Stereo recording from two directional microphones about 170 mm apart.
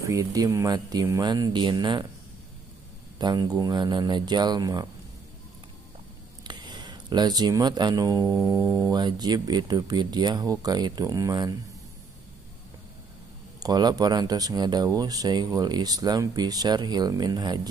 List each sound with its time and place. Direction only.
0.0 s speech: 20° right (ahead or behind)
3.2 s speech: 25° right (ahead or behind)
6.4 s speech: 25° right (ahead or behind)
13.6 s speech: 25° right (ahead or behind)